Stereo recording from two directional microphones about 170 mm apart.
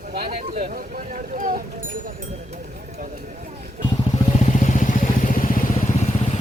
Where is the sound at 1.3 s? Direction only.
50° right (ahead or behind).